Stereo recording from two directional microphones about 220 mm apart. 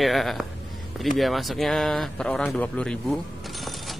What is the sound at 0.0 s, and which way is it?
Speech, centre (ahead or behind).